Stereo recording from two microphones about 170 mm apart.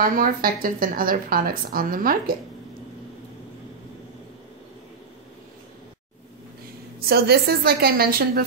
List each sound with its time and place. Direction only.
0.0 s a woman's voice: 55° right (ahead or behind)
7.1 s a woman's voice: 65° right (ahead or behind)